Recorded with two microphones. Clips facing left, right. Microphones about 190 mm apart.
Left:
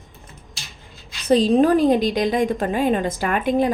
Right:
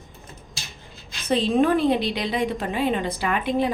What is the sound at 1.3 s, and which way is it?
A woman's voice, 40° left (ahead or behind).